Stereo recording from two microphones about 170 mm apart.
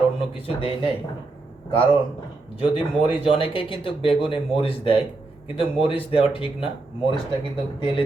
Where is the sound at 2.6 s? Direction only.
30° left (ahead or behind).